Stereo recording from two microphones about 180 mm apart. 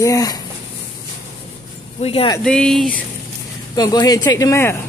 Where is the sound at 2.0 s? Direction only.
30° left (ahead or behind).